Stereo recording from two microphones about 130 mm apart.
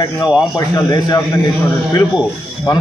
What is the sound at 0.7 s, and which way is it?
Speech, 30° left (ahead or behind).